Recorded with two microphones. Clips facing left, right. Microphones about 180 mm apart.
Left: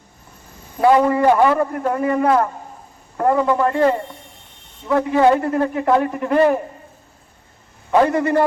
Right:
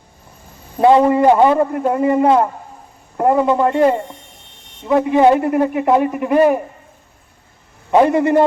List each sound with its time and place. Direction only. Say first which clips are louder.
0.8 s a man's voice: right 3 dB; 25° right (ahead or behind)
7.9 s a man's voice: right 3 dB; 20° right (ahead or behind)